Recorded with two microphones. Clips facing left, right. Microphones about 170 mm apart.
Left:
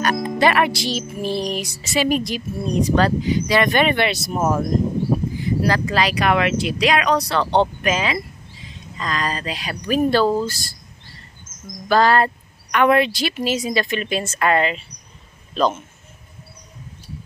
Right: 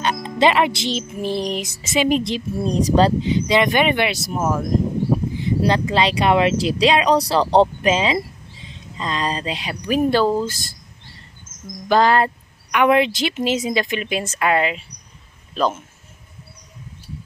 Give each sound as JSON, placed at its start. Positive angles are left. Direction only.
{"t": 0.0, "sound": "speech", "side_deg": -25}
{"t": 5.4, "sound": "speech", "side_deg": -25}
{"t": 11.9, "sound": "a man's voice", "side_deg": -15}